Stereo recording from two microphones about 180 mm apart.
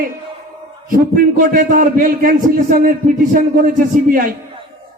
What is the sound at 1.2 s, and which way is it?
A man's voice, 50° right (ahead or behind).